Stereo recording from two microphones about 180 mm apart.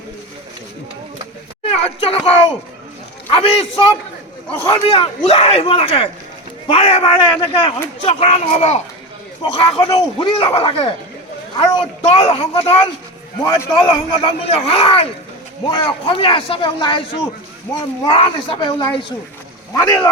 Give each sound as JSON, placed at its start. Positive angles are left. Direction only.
{"t": 1.6, "sound": "a man's voice", "side_deg": 35}
{"t": 13.4, "sound": "a man's voice", "side_deg": 20}